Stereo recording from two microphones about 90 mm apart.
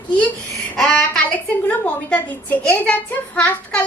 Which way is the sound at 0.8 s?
10° left (ahead or behind).